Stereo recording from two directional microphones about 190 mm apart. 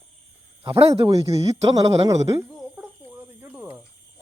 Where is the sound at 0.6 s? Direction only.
15° right (ahead or behind).